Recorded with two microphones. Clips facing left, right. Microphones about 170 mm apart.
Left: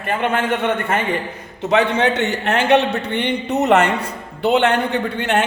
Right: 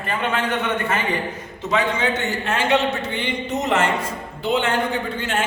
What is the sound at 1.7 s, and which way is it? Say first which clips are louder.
Speech: left 5 dB; 65° left (ahead or behind).